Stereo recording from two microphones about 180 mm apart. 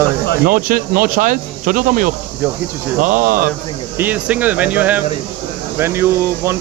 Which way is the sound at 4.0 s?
10° right (ahead or behind).